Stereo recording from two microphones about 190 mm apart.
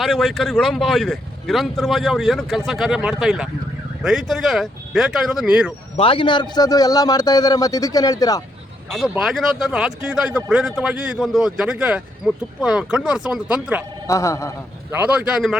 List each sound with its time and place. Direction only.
0.0 s speech: centre (ahead or behind)
6.0 s a man's voice: 30° left (ahead or behind)
8.9 s speech: 5° right (ahead or behind)
14.1 s speech: 15° left (ahead or behind)
14.8 s speech: 10° right (ahead or behind)